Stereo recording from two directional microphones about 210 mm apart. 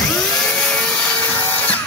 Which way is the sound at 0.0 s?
5° left (ahead or behind).